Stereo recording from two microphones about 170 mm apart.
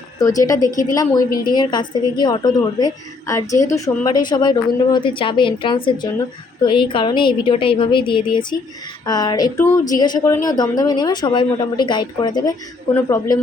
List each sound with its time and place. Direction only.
0.2 s a woman's voice: 20° left (ahead or behind)